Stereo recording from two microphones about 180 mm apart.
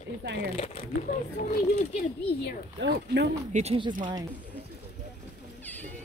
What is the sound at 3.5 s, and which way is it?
Speech, 35° right (ahead or behind).